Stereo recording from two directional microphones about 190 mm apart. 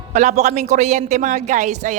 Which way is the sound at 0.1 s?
35° right (ahead or behind).